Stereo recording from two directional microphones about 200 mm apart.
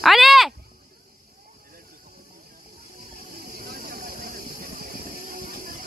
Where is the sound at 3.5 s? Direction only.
50° right (ahead or behind).